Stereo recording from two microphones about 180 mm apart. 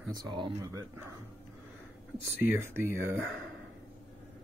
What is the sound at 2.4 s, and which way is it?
Speech, 15° right (ahead or behind).